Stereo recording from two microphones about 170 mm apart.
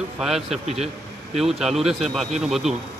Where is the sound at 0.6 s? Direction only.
40° right (ahead or behind).